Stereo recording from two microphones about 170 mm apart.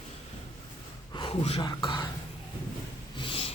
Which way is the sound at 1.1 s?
30° left (ahead or behind).